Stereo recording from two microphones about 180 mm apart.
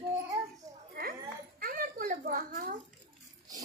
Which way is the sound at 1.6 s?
50° right (ahead or behind).